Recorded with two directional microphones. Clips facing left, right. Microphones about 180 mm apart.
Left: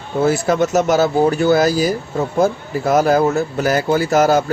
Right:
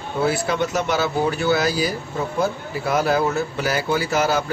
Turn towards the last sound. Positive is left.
turn(degrees=45)  # may be behind; listen again after turning